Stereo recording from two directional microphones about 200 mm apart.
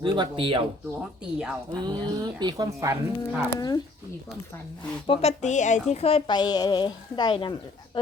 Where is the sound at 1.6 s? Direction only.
20° right (ahead or behind).